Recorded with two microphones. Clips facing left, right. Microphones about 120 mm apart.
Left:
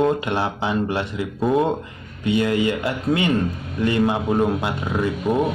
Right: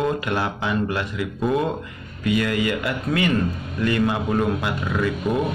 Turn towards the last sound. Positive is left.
turn(degrees=25)  # may be behind; listen again after turning